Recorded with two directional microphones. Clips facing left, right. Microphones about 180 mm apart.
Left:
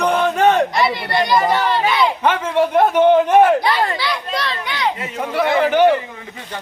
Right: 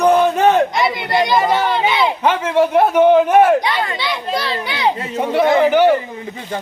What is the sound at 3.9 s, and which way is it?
Speech, 25° right (ahead or behind).